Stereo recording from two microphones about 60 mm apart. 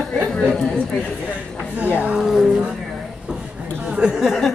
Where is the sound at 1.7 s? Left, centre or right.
Right.